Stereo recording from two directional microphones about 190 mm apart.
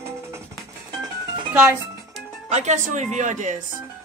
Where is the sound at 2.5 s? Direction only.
35° right (ahead or behind).